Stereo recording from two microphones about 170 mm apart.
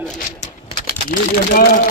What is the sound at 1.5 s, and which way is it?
Speech, 65° left (ahead or behind).